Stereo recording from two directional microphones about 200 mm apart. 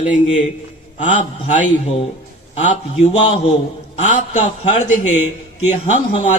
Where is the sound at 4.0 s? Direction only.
35° left (ahead or behind).